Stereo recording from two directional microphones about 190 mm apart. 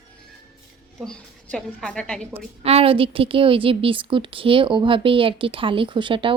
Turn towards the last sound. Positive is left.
turn(degrees=-25)  # may be behind; listen again after turning